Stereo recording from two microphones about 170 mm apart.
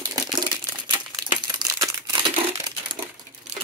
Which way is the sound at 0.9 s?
25° right (ahead or behind).